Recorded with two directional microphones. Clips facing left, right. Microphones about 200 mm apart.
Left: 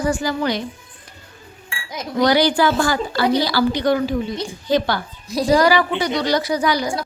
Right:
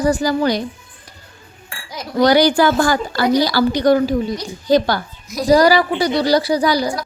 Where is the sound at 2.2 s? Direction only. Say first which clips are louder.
Right 3 dB; 45° right (ahead or behind).